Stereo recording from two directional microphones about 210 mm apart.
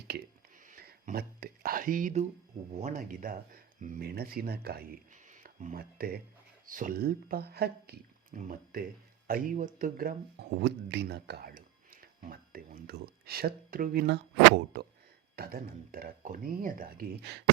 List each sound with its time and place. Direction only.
0.7 s speech: 40° right (ahead or behind)